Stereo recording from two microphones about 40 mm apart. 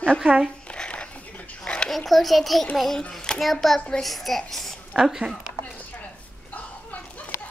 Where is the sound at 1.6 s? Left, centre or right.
Left.